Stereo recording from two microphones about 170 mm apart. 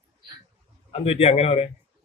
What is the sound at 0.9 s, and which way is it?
Speech, 35° left (ahead or behind).